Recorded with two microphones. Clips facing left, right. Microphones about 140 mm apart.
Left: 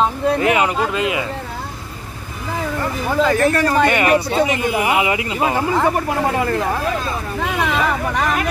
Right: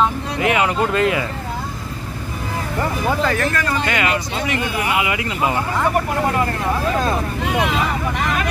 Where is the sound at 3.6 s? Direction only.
50° left (ahead or behind).